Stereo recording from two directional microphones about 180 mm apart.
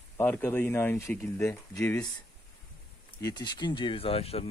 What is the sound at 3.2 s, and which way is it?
Speech, 20° left (ahead or behind).